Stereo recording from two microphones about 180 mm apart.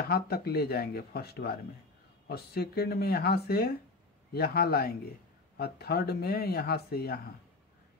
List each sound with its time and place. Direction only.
0.0 s speech: 60° left (ahead or behind)